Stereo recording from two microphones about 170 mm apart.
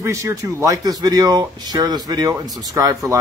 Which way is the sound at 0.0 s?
15° right (ahead or behind).